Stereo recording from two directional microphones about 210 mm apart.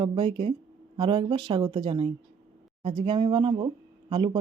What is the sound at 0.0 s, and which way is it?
Speech, 25° right (ahead or behind).